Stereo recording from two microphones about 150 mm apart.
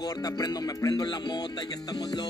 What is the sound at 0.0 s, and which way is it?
Music, 25° left (ahead or behind).